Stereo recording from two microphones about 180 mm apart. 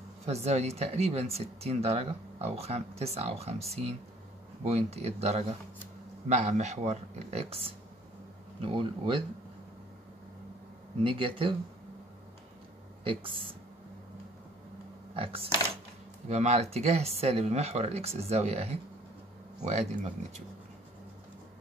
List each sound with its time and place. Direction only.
0.2 s speech: 35° right (ahead or behind)
11.1 s speech: 30° right (ahead or behind)
13.0 s speech: 30° right (ahead or behind)
15.1 s speech: 30° right (ahead or behind)